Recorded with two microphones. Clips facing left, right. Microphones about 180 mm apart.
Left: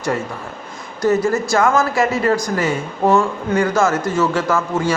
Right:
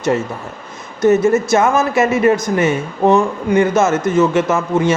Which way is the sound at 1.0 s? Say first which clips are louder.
Right 4 dB; 20° right (ahead or behind).